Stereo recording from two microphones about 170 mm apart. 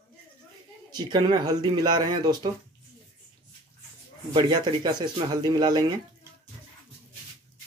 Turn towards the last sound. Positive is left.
turn(degrees=-25)  # may be behind; listen again after turning